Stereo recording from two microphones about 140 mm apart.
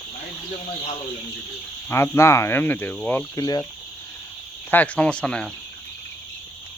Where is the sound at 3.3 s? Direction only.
25° left (ahead or behind).